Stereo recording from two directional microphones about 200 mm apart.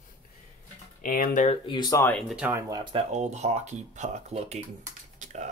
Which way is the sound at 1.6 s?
25° left (ahead or behind).